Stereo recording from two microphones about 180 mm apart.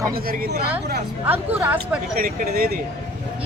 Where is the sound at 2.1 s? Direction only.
55° right (ahead or behind).